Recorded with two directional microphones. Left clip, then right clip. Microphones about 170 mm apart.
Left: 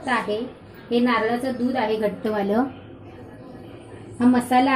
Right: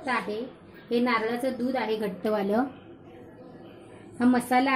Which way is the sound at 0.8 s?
35° right (ahead or behind).